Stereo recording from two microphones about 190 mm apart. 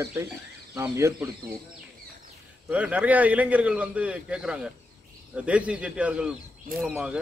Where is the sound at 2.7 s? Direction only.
5° right (ahead or behind).